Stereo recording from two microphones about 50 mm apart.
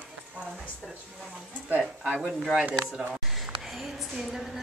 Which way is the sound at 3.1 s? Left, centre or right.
Centre.